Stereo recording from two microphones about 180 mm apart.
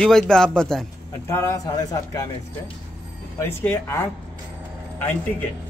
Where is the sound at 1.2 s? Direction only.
15° left (ahead or behind).